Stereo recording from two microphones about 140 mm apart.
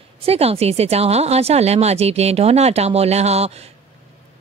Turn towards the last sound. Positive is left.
turn(degrees=-50)  # may be behind; listen again after turning